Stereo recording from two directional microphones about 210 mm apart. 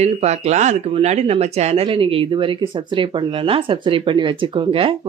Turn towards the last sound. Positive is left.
turn(degrees=-25)  # may be behind; listen again after turning